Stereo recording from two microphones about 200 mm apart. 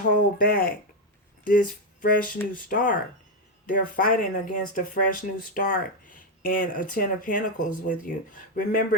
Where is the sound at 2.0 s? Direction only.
45° left (ahead or behind).